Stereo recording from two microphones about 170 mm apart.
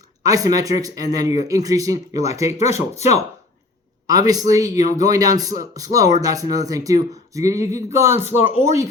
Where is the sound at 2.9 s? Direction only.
40° left (ahead or behind).